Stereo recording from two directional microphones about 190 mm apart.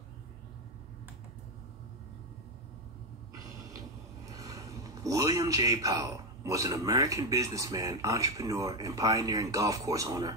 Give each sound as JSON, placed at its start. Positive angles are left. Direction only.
{"t": 4.3, "sound": "a man's voice", "side_deg": -20}